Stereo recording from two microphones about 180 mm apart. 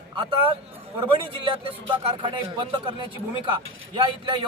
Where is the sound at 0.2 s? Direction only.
30° right (ahead or behind).